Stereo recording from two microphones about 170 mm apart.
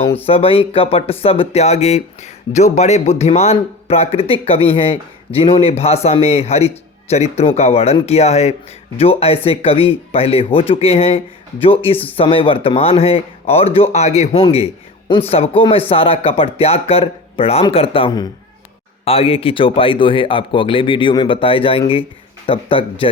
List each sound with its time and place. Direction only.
0.3 s a man's voice: 35° left (ahead or behind)